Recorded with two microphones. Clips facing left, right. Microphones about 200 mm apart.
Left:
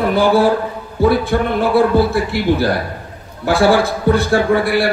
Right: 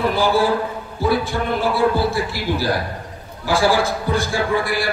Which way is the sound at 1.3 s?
60° left (ahead or behind).